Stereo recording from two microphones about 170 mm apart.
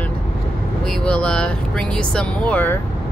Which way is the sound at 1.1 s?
5° left (ahead or behind).